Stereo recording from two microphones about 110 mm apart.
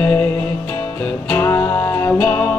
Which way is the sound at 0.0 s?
15° left (ahead or behind).